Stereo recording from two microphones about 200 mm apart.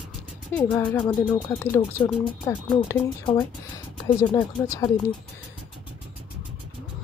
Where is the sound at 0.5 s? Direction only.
10° left (ahead or behind).